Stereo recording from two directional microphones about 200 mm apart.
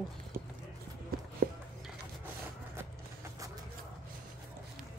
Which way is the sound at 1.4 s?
45° right (ahead or behind).